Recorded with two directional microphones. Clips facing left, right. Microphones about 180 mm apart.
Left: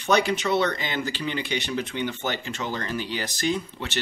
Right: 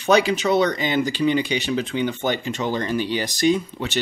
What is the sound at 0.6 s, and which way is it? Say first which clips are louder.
Speech: right 6 dB; 15° right (ahead or behind).